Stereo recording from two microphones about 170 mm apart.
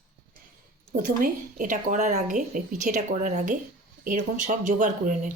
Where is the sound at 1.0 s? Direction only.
50° right (ahead or behind).